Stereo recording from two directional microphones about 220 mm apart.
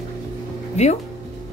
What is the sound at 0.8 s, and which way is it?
Music, 30° left (ahead or behind).